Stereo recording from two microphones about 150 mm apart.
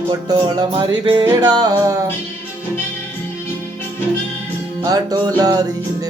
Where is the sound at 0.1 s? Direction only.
25° right (ahead or behind).